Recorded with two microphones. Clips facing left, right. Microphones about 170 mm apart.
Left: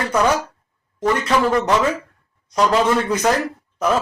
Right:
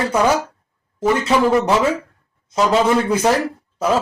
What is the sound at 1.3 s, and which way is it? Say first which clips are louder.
Speech: right 2 dB; 15° right (ahead or behind).